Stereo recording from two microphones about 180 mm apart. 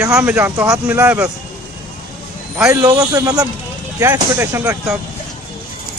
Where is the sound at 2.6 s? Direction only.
5° right (ahead or behind).